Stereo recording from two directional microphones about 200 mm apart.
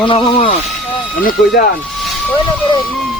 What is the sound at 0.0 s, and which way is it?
Speech, 25° left (ahead or behind).